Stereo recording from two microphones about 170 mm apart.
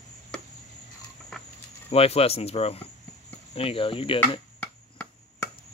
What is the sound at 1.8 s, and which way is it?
Speech, 35° left (ahead or behind).